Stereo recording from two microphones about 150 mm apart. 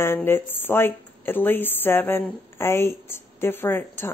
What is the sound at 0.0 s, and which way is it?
Speech, 15° left (ahead or behind).